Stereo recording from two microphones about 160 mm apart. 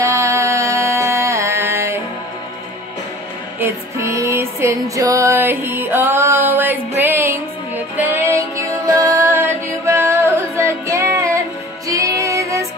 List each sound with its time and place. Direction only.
0.0 s music: 20° right (ahead or behind)
3.5 s music: 15° right (ahead or behind)